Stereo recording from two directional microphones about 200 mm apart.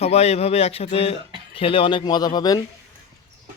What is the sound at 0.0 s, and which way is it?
A man's voice, 30° left (ahead or behind).